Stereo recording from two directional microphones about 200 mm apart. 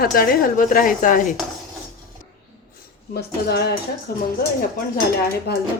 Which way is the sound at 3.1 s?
55° left (ahead or behind).